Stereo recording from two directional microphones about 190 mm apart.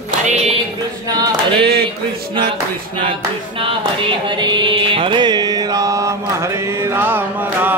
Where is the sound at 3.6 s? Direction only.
25° right (ahead or behind).